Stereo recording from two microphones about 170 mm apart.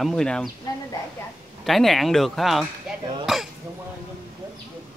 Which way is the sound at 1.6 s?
Centre (ahead or behind).